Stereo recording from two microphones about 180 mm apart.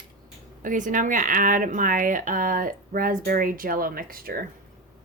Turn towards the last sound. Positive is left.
turn(degrees=-55)  # may be behind; listen again after turning